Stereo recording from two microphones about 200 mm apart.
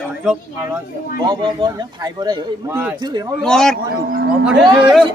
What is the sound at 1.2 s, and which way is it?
A man's voice, 25° right (ahead or behind).